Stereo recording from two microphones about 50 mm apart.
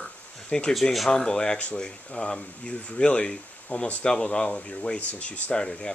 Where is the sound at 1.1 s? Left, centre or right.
Centre.